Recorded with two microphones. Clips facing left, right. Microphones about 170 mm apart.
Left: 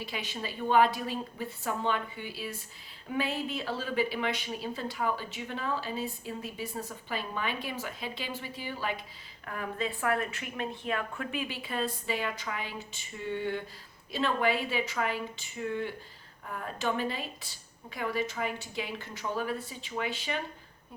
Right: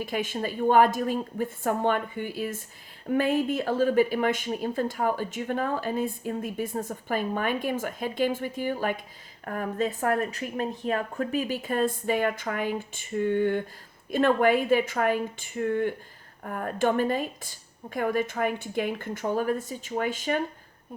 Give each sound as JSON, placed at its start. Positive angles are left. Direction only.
{"t": 0.0, "sound": "speech", "side_deg": -50}